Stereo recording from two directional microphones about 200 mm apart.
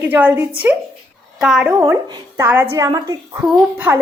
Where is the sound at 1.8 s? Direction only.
20° right (ahead or behind).